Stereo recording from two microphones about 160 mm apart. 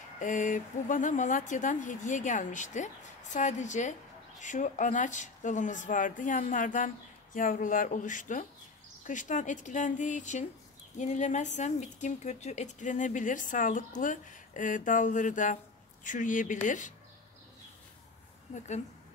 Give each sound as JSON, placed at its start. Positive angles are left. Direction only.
{"t": 0.2, "sound": "a woman's voice", "side_deg": 50}